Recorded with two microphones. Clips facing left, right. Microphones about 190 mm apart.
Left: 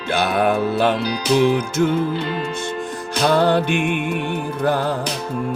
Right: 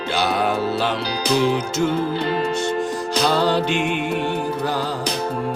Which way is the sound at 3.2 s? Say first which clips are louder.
Left 4 dB; 55° left (ahead or behind).